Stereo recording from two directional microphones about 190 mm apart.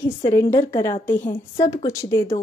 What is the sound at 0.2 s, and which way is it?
A woman's voice, 15° left (ahead or behind).